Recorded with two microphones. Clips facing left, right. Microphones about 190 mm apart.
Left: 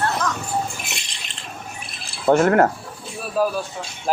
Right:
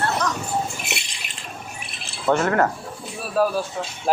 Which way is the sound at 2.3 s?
45° left (ahead or behind).